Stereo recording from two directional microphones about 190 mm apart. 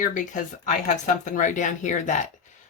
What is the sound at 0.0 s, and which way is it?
A woman's voice, 45° left (ahead or behind).